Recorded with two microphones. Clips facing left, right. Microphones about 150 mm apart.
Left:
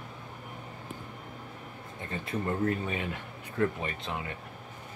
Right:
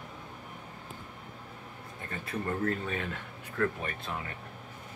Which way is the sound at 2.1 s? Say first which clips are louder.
Left 2 dB; 20° left (ahead or behind).